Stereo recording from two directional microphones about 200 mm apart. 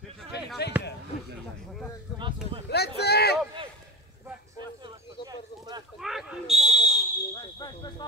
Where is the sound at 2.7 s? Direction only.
55° left (ahead or behind).